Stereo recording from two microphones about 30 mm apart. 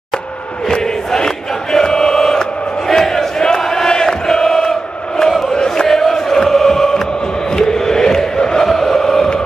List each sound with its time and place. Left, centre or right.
0.7 s crowd: left
3.6 s chant: centre
3.9 s chant: left
8.6 s chant: centre
8.9 s a sound: centre